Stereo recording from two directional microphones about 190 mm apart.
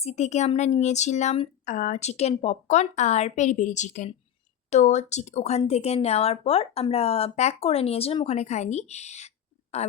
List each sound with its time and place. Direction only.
0.0 s speech: 35° left (ahead or behind)